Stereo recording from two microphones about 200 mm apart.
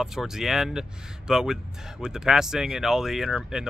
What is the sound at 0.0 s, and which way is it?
Speech, centre (ahead or behind).